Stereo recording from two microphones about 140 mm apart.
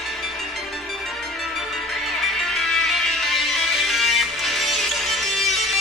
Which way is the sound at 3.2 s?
Centre (ahead or behind).